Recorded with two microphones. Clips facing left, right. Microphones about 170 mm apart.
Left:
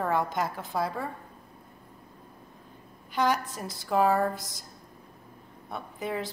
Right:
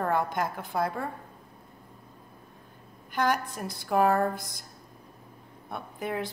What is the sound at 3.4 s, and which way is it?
Speech, 55° right (ahead or behind).